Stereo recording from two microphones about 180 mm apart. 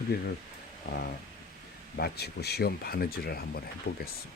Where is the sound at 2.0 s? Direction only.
65° left (ahead or behind).